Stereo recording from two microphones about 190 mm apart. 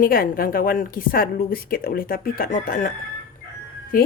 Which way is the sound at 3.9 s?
50° left (ahead or behind).